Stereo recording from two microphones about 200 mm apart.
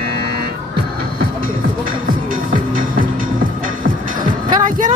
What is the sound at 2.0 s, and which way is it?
Music, 45° right (ahead or behind).